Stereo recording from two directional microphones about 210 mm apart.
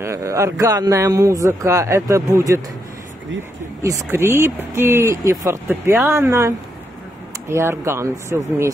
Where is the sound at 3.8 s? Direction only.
15° right (ahead or behind).